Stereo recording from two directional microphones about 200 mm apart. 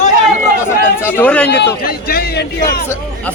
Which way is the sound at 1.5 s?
55° left (ahead or behind).